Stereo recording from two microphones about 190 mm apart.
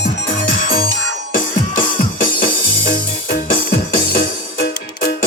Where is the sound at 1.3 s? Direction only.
45° left (ahead or behind).